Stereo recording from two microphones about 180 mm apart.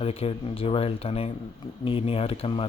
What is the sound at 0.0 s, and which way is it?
Speech, 35° left (ahead or behind).